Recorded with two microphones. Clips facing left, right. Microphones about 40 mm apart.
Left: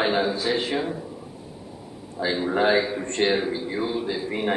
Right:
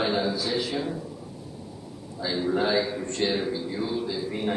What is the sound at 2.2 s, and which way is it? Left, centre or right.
A man's voice, left.